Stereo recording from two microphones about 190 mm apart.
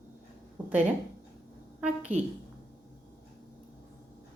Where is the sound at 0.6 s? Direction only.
10° right (ahead or behind).